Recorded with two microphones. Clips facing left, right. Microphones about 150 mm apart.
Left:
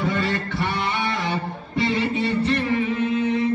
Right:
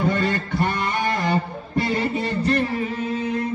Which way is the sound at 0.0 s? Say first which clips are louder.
Right 2 dB; 45° right (ahead or behind).